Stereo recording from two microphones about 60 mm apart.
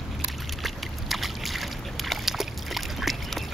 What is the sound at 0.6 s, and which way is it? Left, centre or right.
Boat, centre.